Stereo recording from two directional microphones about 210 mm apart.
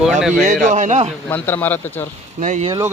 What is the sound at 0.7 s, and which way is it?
Speech, 35° right (ahead or behind).